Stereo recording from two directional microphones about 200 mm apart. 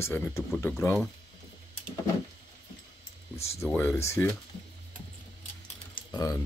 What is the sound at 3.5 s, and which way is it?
Speech, 10° left (ahead or behind).